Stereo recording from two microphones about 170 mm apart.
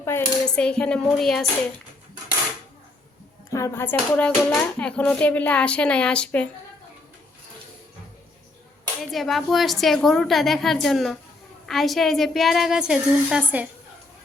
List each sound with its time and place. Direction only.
0.0 s cutlery: 15° left (ahead or behind)
0.4 s a woman's voice: 5° left (ahead or behind)
3.5 s speech: 15° left (ahead or behind)
9.0 s a woman's voice: centre (ahead or behind)